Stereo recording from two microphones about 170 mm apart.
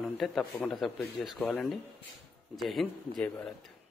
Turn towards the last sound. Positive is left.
turn(degrees=0)  # may be behind; listen again after turning